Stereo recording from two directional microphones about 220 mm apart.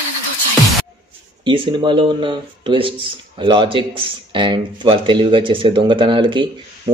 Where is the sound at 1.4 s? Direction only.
20° right (ahead or behind).